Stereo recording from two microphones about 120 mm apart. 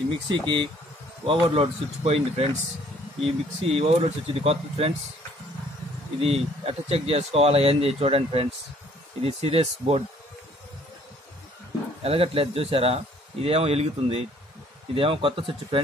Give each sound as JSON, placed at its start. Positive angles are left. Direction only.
{"t": 0.3, "sound": "speech", "side_deg": -45}
{"t": 6.2, "sound": "speech", "side_deg": -55}
{"t": 12.0, "sound": "speech", "side_deg": -55}